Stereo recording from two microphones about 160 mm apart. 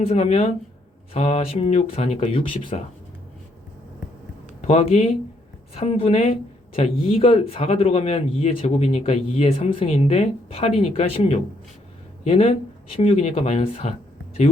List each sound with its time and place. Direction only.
0.1 s speech: 40° left (ahead or behind)
4.6 s speech: 45° left (ahead or behind)